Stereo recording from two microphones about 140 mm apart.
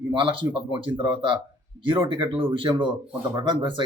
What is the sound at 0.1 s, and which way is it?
Speech, 40° right (ahead or behind).